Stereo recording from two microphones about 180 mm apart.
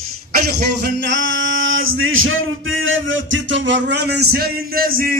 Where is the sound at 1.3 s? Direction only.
90° right.